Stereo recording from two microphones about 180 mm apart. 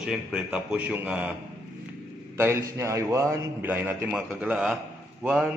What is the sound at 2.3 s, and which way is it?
A man's voice, 15° right (ahead or behind).